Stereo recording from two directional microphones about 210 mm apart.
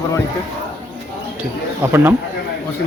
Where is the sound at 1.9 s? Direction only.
10° right (ahead or behind).